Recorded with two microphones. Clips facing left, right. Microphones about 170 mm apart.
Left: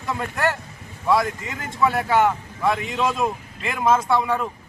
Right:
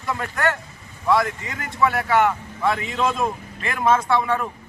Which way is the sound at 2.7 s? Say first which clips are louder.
Even; 15° left (ahead or behind).